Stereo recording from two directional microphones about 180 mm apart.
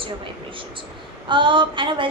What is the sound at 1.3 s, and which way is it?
Speech, 25° right (ahead or behind).